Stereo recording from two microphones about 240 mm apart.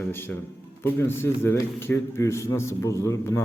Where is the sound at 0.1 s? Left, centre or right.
Centre.